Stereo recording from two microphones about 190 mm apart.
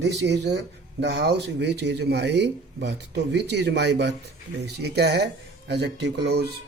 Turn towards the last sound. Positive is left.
turn(degrees=-65)  # may be behind; listen again after turning